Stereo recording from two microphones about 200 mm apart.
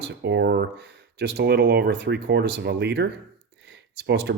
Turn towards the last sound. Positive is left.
turn(degrees=-60)  # may be behind; listen again after turning